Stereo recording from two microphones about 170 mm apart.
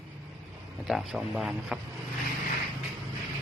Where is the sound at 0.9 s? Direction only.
Centre (ahead or behind).